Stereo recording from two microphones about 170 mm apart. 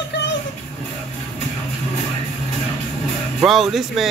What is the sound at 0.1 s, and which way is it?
Music, 90° left.